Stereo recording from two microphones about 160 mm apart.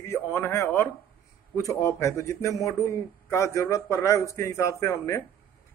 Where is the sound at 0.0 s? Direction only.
15° left (ahead or behind).